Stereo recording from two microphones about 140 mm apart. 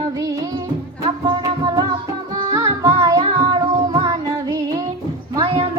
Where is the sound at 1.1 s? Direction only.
30° right (ahead or behind).